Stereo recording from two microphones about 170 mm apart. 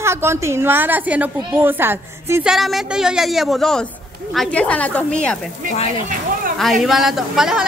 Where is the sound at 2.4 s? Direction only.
Centre (ahead or behind).